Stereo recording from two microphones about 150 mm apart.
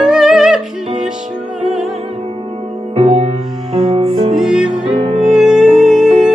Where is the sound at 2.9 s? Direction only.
45° right (ahead or behind).